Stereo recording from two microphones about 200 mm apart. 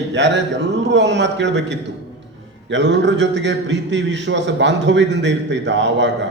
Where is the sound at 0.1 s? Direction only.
60° right (ahead or behind).